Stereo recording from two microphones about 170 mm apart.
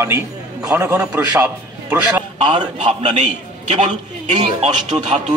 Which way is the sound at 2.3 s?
45° right (ahead or behind).